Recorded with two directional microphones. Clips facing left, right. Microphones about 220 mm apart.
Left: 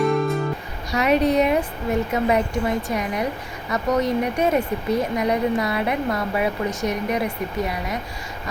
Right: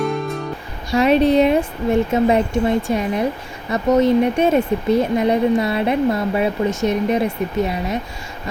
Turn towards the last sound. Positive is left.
turn(degrees=-25)  # may be behind; listen again after turning